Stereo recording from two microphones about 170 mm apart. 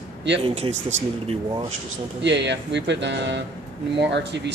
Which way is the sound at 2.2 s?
90° right.